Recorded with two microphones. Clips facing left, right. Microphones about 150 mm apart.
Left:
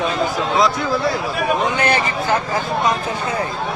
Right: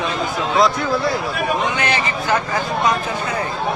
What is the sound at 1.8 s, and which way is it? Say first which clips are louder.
Speech: left 3 dB; 50° left (ahead or behind).